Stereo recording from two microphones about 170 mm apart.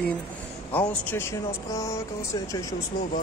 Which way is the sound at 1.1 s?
15° left (ahead or behind).